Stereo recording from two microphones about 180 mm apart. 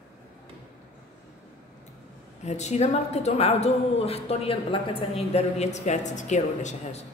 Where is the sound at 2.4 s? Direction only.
40° left (ahead or behind).